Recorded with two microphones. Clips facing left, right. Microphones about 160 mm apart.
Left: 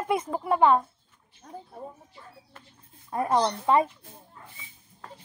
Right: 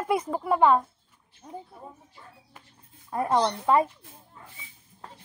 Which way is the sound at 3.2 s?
Centre (ahead or behind).